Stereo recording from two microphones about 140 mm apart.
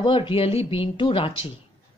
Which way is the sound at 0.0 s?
35° left (ahead or behind).